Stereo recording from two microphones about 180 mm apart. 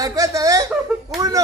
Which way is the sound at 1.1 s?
20° right (ahead or behind).